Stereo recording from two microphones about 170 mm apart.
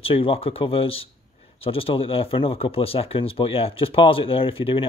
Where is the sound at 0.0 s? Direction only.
30° left (ahead or behind).